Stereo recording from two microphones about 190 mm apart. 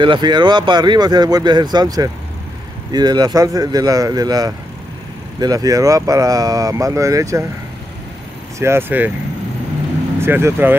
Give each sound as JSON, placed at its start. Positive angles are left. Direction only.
{"t": 0.0, "sound": "speech", "side_deg": -25}
{"t": 8.5, "sound": "speech", "side_deg": -15}
{"t": 10.2, "sound": "speech", "side_deg": -10}